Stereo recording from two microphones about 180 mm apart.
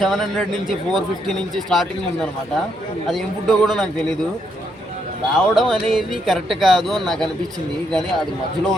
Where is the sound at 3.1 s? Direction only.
Centre (ahead or behind).